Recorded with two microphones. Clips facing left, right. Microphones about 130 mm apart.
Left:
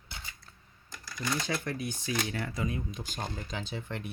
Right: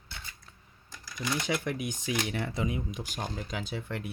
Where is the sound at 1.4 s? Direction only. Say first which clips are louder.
Right 2 dB; 15° right (ahead or behind).